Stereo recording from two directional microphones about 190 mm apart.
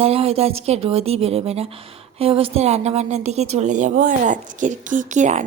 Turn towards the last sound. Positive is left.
turn(degrees=-40)  # may be behind; listen again after turning